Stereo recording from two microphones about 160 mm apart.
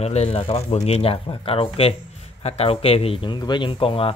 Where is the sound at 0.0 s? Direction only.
40° left (ahead or behind).